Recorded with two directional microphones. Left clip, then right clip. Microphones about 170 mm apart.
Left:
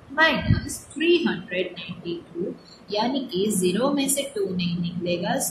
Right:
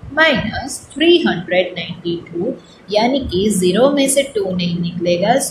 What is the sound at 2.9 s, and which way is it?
A woman's voice, 30° right (ahead or behind).